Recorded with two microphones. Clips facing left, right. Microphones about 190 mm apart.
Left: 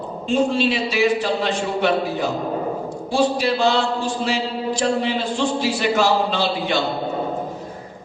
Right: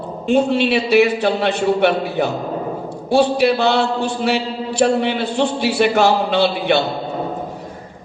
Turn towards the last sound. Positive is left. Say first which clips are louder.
# right 5 dB
turn(degrees=-60)  # may be behind; listen again after turning